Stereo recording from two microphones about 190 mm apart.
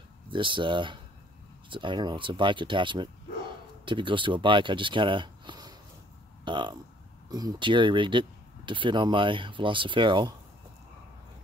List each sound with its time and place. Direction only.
0.3 s speech: 25° right (ahead or behind)